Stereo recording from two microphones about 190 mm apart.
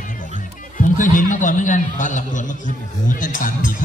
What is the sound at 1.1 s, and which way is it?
A man's voice, 45° left (ahead or behind).